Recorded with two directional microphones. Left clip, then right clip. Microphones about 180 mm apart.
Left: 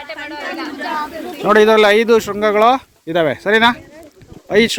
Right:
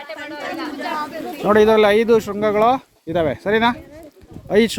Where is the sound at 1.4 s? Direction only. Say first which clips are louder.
Left 3 dB; 10° right (ahead or behind).